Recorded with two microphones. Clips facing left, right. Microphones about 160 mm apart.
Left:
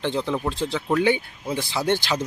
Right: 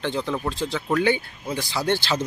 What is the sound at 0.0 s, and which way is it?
Speech, 20° left (ahead or behind).